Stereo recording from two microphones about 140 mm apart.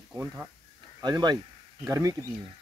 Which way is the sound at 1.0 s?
30° right (ahead or behind).